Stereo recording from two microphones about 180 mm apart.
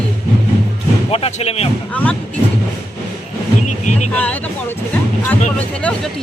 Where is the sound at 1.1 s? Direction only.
35° left (ahead or behind).